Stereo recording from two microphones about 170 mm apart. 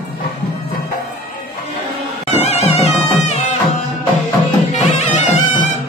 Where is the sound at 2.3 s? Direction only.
40° left (ahead or behind).